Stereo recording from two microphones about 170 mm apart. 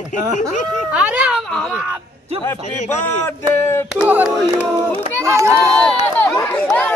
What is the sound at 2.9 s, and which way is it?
Speech, 15° left (ahead or behind).